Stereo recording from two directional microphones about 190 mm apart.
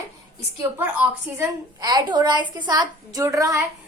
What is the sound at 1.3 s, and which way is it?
A woman's voice, 20° right (ahead or behind).